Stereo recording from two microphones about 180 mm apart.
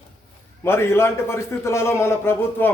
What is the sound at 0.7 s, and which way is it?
A man's voice, 15° left (ahead or behind).